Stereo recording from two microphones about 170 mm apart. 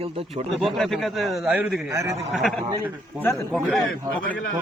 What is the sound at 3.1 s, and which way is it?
Speech, 5° right (ahead or behind).